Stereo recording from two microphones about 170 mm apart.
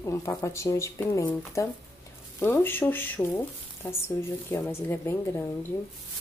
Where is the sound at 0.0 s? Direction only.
15° left (ahead or behind).